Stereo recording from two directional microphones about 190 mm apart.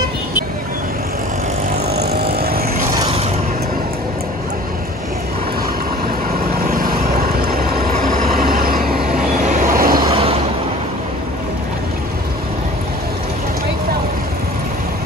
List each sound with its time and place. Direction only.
2.0 s vehicle: 50° right (ahead or behind)
6.6 s vehicle: 50° right (ahead or behind)
10.0 s vehicle: 30° right (ahead or behind)